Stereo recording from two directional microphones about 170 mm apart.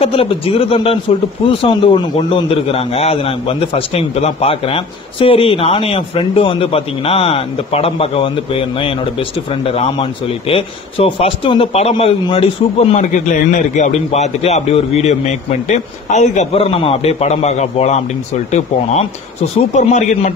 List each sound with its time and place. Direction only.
0.0 s a man's voice: 35° left (ahead or behind)